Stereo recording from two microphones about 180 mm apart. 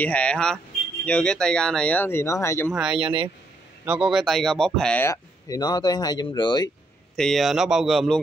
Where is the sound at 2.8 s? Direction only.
5° right (ahead or behind).